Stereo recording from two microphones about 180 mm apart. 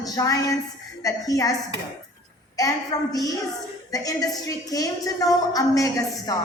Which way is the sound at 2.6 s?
20° left (ahead or behind).